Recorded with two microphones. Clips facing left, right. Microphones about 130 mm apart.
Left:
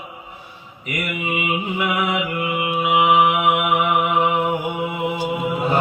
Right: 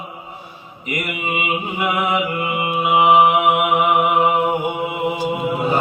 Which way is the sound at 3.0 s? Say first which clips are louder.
Right 4 dB; 35° right (ahead or behind).